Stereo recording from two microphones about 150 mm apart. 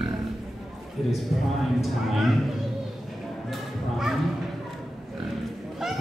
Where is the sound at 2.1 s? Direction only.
Centre (ahead or behind).